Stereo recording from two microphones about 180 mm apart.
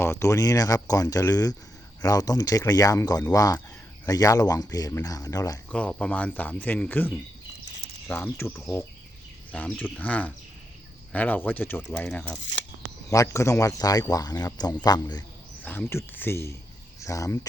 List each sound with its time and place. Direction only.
0.0 s speech: 15° left (ahead or behind)
5.7 s speech: 5° left (ahead or behind)
13.1 s speech: 15° left (ahead or behind)
15.6 s speech: 10° left (ahead or behind)